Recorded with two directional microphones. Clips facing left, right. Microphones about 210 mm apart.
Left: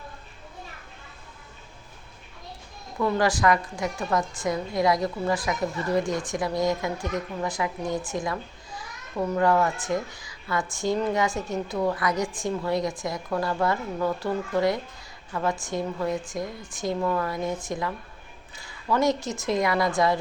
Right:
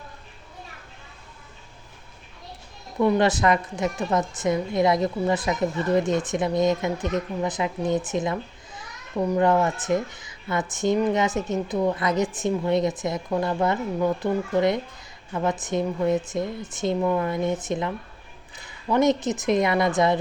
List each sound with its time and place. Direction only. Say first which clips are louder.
3.0 s a woman's voice: right 3 dB; 25° right (ahead or behind)